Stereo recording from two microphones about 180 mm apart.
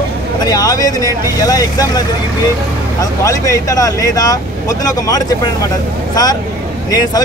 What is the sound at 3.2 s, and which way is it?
Speech, 20° left (ahead or behind).